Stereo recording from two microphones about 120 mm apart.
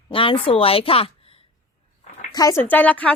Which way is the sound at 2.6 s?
15° left (ahead or behind).